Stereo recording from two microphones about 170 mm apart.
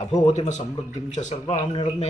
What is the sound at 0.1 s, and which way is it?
Speech, 45° left (ahead or behind).